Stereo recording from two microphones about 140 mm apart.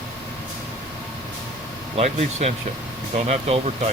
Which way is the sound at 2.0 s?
50° right (ahead or behind).